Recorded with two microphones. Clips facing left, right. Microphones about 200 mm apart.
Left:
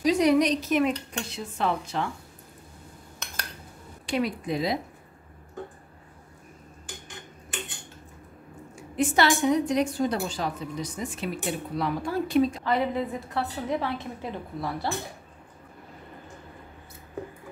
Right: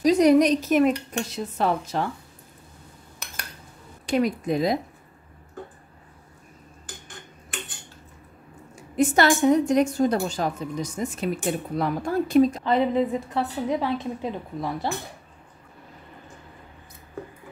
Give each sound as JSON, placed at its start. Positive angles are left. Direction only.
{"t": 0.0, "sound": "a woman's voice", "side_deg": -40}
{"t": 4.0, "sound": "a woman's voice", "side_deg": -45}
{"t": 8.9, "sound": "a woman's voice", "side_deg": -45}
{"t": 12.6, "sound": "a woman's voice", "side_deg": -20}